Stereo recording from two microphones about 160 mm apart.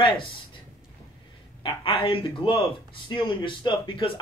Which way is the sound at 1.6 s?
35° left (ahead or behind).